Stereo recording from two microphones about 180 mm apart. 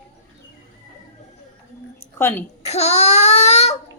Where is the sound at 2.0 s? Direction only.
15° left (ahead or behind).